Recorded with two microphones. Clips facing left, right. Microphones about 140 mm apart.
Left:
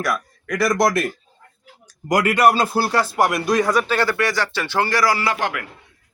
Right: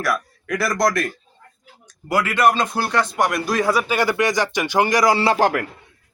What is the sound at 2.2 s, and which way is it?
Speech, 10° left (ahead or behind).